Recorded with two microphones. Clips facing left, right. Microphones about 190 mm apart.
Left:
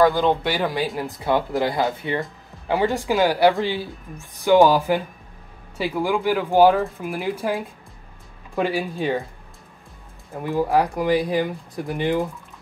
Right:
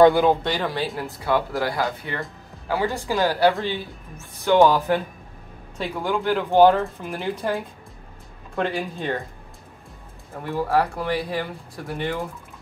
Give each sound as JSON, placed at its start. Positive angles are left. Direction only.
{"t": 0.1, "sound": "speech", "side_deg": -5}
{"t": 0.4, "sound": "speech", "side_deg": 10}
{"t": 8.5, "sound": "speech", "side_deg": 5}
{"t": 10.3, "sound": "speech", "side_deg": 15}